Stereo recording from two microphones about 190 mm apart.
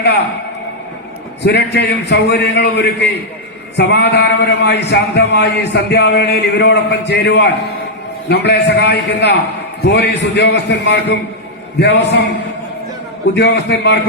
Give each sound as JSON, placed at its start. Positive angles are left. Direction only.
{"t": 1.5, "sound": "a man's voice", "side_deg": 65}
{"t": 13.3, "sound": "a man's voice", "side_deg": 65}